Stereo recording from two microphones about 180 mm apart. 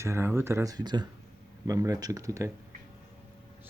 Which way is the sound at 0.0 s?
15° right (ahead or behind).